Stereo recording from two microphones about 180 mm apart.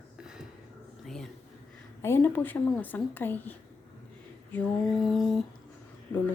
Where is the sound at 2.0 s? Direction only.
10° left (ahead or behind).